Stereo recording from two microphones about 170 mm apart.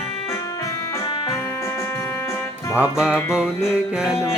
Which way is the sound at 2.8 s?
5° right (ahead or behind).